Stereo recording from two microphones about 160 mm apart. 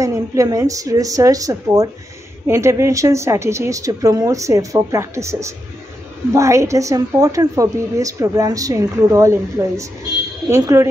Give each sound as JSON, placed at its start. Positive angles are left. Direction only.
{"t": 0.0, "sound": "a woman's voice", "side_deg": -20}